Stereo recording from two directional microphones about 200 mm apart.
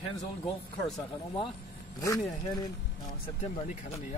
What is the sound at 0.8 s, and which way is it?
Speech, 20° left (ahead or behind).